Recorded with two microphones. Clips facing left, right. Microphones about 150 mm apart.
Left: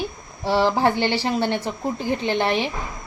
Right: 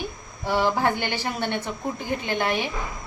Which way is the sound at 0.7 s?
15° left (ahead or behind).